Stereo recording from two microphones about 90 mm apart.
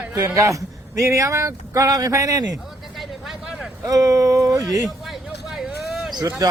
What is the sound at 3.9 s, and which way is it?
Speech, 40° right (ahead or behind).